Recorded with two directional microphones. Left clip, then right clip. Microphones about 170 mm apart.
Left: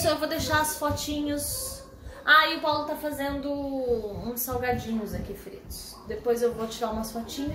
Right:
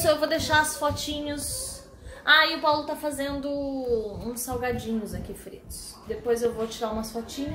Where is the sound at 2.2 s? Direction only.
25° right (ahead or behind).